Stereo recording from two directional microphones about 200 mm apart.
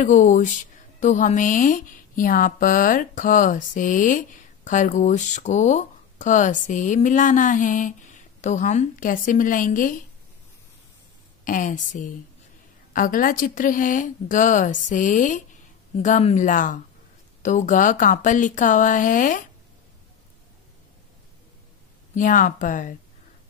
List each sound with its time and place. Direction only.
0.0 s speech: 40° left (ahead or behind)
11.4 s speech: 40° left (ahead or behind)
22.1 s speech: 40° left (ahead or behind)